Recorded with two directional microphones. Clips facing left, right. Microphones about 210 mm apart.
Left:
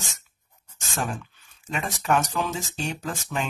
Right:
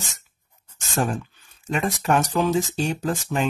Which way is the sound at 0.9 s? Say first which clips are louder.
Right 6 dB; 40° right (ahead or behind).